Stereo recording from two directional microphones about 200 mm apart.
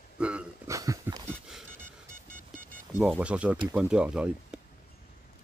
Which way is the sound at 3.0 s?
5° right (ahead or behind).